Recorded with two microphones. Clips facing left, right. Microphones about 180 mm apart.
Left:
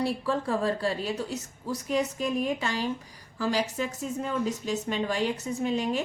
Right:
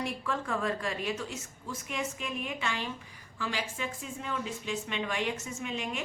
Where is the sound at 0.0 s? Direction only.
35° left (ahead or behind).